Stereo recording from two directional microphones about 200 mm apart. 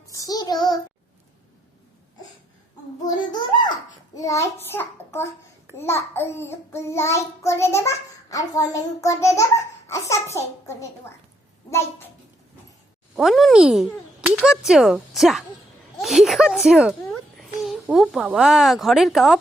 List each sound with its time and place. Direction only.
0.1 s child singing: 15° left (ahead or behind)
3.1 s child singing: 20° left (ahead or behind)
13.1 s a child's voice: centre (ahead or behind)